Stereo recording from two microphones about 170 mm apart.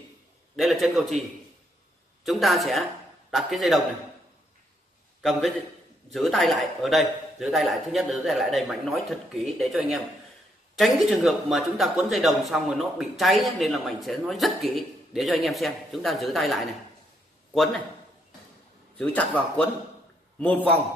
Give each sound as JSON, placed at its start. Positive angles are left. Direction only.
{"t": 0.6, "sound": "a man's voice", "side_deg": 0}
{"t": 2.2, "sound": "a man's voice", "side_deg": 0}
{"t": 5.2, "sound": "a man's voice", "side_deg": 0}
{"t": 18.9, "sound": "a man's voice", "side_deg": 5}